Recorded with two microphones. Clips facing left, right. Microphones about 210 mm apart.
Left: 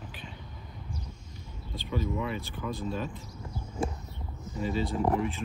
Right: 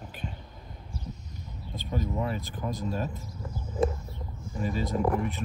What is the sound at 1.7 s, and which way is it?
Speech, 45° right (ahead or behind).